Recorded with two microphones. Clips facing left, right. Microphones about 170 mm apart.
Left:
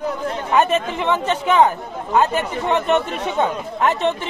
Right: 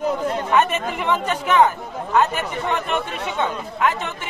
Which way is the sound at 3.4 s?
35° left (ahead or behind).